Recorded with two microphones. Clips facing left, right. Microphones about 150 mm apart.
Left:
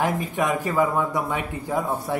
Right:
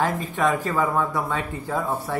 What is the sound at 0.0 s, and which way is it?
Speech, 15° left (ahead or behind).